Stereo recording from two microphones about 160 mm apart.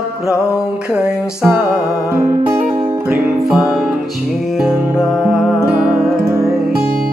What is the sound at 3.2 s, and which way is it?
Music, centre (ahead or behind).